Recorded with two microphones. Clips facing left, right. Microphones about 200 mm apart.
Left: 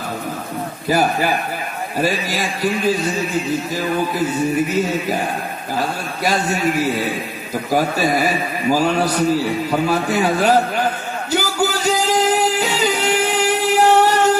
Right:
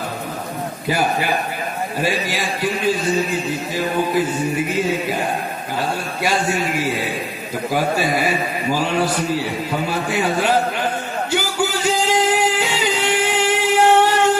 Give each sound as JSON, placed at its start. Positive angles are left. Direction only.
{"t": 0.8, "sound": "a man's voice", "side_deg": 40}
{"t": 6.2, "sound": "a man's voice", "side_deg": 40}
{"t": 11.3, "sound": "music", "side_deg": 40}